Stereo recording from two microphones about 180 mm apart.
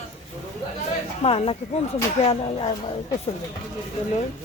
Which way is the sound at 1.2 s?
30° left (ahead or behind).